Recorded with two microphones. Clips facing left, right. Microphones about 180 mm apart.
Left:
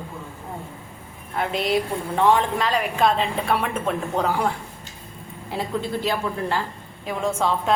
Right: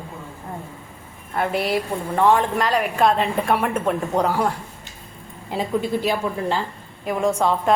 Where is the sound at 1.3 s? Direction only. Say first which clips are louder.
Right 1 dB; 10° right (ahead or behind).